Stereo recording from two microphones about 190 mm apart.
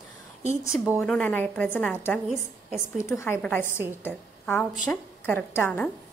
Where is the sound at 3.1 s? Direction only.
15° left (ahead or behind).